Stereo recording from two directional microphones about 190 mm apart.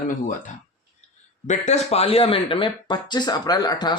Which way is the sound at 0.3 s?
40° left (ahead or behind).